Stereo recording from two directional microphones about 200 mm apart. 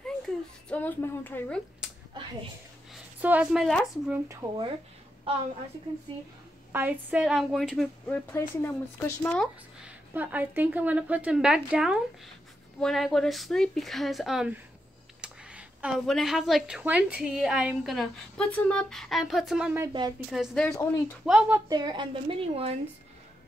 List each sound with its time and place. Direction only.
0.7 s a woman's voice: 10° left (ahead or behind)
2.9 s speech: 5° right (ahead or behind)
4.3 s a woman's voice: 15° right (ahead or behind)
6.7 s speech: 10° right (ahead or behind); by 9.5 s 10° left (ahead or behind)
9.8 s a woman's voice: 5° right (ahead or behind)
19.8 s a woman's voice: 20° right (ahead or behind)
20.2 s speech: centre (ahead or behind)
21.6 s a woman's voice: 20° right (ahead or behind)